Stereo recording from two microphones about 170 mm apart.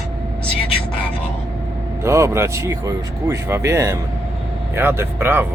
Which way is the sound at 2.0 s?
15° right (ahead or behind).